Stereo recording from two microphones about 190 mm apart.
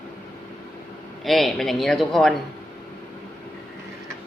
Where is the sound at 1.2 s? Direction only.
Centre (ahead or behind).